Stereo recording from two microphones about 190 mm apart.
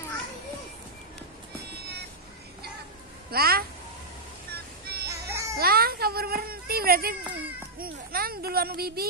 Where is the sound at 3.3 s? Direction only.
55° right (ahead or behind).